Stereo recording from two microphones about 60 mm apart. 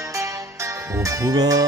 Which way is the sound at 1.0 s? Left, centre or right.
Right.